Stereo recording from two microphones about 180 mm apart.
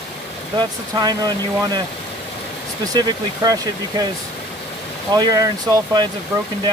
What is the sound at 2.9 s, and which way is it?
Speech, 20° right (ahead or behind).